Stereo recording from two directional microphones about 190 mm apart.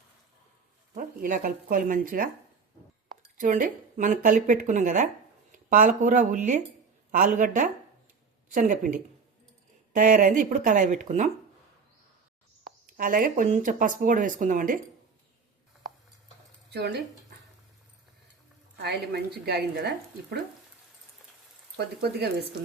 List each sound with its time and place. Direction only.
0.9 s speech: 45° right (ahead or behind)
3.3 s speech: 45° right (ahead or behind)
13.0 s speech: 45° right (ahead or behind)
16.7 s speech: 60° right (ahead or behind)
18.8 s a woman's voice: 60° right (ahead or behind)
21.8 s a woman's voice: 55° right (ahead or behind)